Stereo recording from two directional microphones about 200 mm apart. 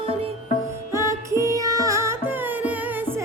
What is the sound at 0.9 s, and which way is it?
Carnatic music, 15° right (ahead or behind).